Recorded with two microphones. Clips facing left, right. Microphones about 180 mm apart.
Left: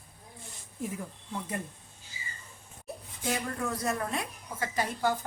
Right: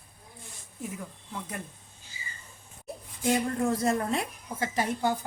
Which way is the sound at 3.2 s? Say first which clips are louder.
Right 6 dB; 25° right (ahead or behind).